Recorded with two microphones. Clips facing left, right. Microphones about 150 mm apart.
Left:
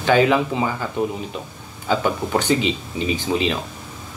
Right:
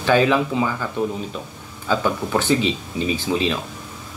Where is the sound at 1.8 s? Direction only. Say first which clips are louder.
Even; 20° left (ahead or behind).